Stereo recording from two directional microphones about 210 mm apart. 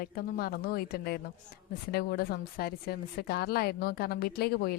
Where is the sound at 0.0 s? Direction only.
45° left (ahead or behind).